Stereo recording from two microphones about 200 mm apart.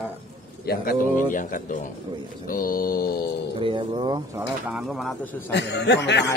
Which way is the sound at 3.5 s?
25° right (ahead or behind).